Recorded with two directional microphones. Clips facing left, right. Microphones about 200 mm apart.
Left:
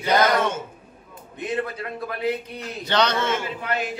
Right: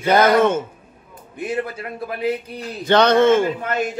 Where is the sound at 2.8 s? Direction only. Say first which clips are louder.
Right 9 dB; 50° right (ahead or behind).